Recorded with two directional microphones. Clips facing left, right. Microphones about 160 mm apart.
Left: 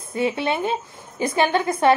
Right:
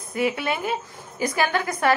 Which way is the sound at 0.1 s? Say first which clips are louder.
Left 2 dB; 25° left (ahead or behind).